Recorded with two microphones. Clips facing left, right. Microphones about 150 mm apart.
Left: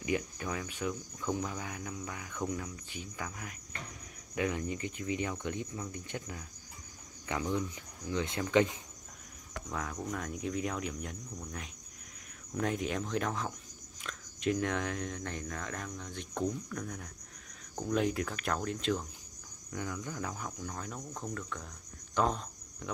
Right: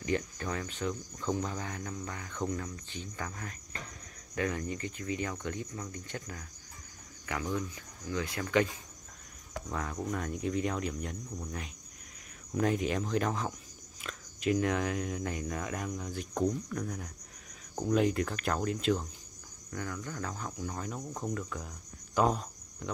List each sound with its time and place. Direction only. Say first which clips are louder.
0.0 s cricket: right 1 dB; 10° left (ahead or behind)
7.2 s speech: left 1 dB; 20° left (ahead or behind)
9.7 s speech: right 2 dB; centre (ahead or behind)
19.7 s cricket: even; 15° left (ahead or behind)
20.4 s speech: right 3 dB; 5° right (ahead or behind)
22.1 s cricket: right 3 dB; 5° right (ahead or behind)